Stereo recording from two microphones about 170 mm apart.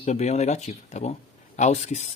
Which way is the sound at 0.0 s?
40° left (ahead or behind).